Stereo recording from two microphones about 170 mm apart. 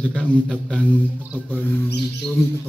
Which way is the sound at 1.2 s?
10° right (ahead or behind).